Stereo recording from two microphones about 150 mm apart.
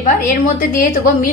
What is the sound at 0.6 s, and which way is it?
Speech, 65° left (ahead or behind).